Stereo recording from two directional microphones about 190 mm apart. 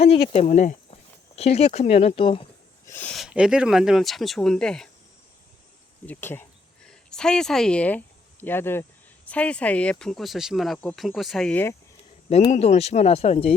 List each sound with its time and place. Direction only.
0.0 s speech: 35° left (ahead or behind)
2.8 s speech: 10° left (ahead or behind)
6.1 s speech: 10° left (ahead or behind)
12.5 s speech: 35° left (ahead or behind)